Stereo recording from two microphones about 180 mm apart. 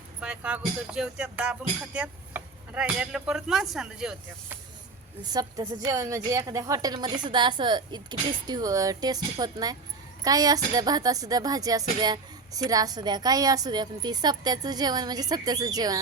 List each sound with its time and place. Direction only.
0.2 s speech: 5° right (ahead or behind)
5.2 s speech: 20° right (ahead or behind)